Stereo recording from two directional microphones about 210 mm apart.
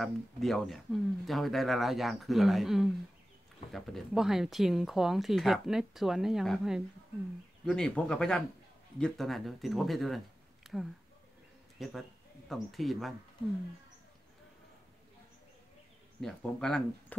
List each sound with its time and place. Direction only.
0.0 s speech: centre (ahead or behind)
16.2 s speech: 5° left (ahead or behind)